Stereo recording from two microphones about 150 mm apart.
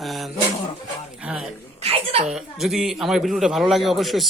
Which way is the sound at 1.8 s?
40° right (ahead or behind).